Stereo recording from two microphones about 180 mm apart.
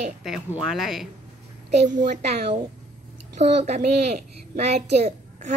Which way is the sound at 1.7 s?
40° right (ahead or behind).